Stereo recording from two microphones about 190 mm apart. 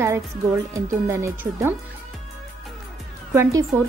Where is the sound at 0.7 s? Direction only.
15° right (ahead or behind).